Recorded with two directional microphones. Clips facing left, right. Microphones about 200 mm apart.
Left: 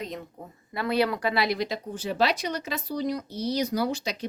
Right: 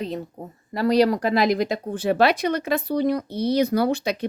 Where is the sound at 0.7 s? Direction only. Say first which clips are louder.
Right 7 dB; 40° right (ahead or behind).